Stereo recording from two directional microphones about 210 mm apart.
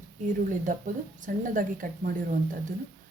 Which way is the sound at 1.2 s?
40° right (ahead or behind).